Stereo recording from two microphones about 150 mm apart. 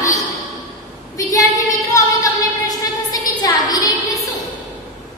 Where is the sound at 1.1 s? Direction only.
20° left (ahead or behind).